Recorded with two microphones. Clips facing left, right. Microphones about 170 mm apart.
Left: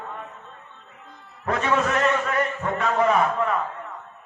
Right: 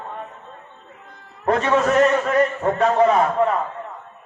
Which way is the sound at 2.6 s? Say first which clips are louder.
Right 3 dB; 30° right (ahead or behind).